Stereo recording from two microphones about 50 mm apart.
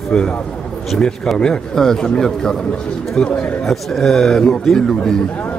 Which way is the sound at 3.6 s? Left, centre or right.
Centre.